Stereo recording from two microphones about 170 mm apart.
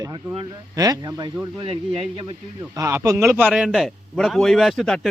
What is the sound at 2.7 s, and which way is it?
A man's voice, 20° right (ahead or behind).